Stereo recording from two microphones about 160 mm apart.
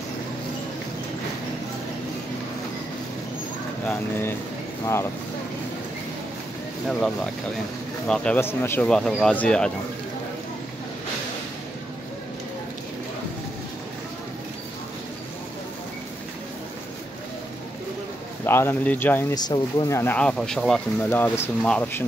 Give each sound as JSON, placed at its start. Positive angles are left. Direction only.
{"t": 8.1, "sound": "speech", "side_deg": 5}
{"t": 18.4, "sound": "speech", "side_deg": 15}
{"t": 19.3, "sound": "speech", "side_deg": 25}
{"t": 20.0, "sound": "speech", "side_deg": 10}